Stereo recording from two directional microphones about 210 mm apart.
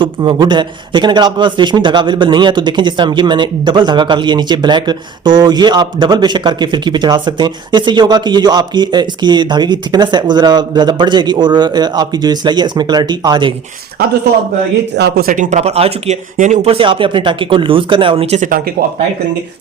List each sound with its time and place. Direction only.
0.0 s a man's voice: 20° right (ahead or behind)
14.9 s a man's voice: 50° right (ahead or behind)